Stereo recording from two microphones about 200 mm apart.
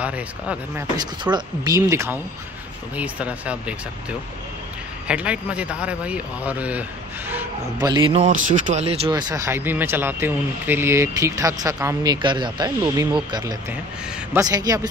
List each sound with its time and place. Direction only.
0.0 s speech: 5° right (ahead or behind)
0.9 s speech: 20° right (ahead or behind)
5.0 s speech: 5° right (ahead or behind)
7.8 s speech: 25° right (ahead or behind)
9.1 s a man's voice: 15° right (ahead or behind)